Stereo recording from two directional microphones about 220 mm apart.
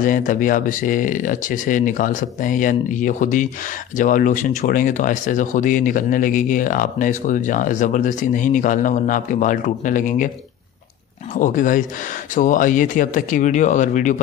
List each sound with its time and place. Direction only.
0.0 s speech: 35° left (ahead or behind)
11.3 s speech: 35° left (ahead or behind)